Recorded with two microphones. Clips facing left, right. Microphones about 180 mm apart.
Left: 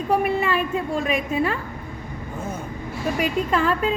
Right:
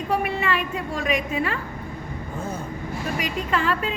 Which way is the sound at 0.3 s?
40° left (ahead or behind).